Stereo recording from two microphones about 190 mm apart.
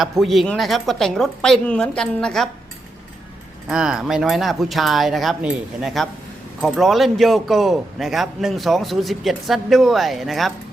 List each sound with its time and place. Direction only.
0.0 s a man's voice: centre (ahead or behind)
3.7 s a man's voice: 5° right (ahead or behind)